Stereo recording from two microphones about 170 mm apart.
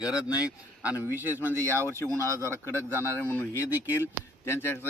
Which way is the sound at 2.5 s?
15° left (ahead or behind).